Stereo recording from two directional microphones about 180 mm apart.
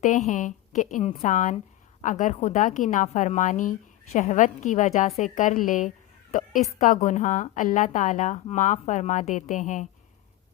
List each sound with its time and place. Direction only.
0.3 s a woman's voice: 45° left (ahead or behind)